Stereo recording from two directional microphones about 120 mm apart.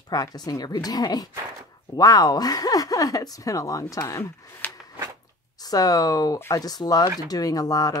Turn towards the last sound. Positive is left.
turn(degrees=30)  # may be behind; listen again after turning